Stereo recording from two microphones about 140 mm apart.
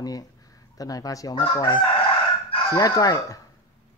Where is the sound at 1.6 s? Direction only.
30° left (ahead or behind).